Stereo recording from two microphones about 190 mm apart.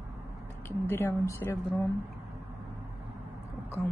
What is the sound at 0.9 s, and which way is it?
Speech, 15° left (ahead or behind).